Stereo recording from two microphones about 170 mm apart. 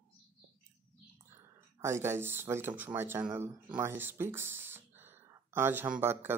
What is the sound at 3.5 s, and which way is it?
Speech, 20° right (ahead or behind).